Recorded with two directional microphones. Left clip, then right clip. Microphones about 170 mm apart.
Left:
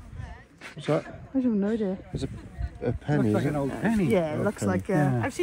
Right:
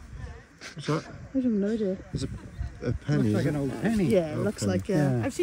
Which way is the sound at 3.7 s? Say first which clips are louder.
Left 1 dB; 25° left (ahead or behind).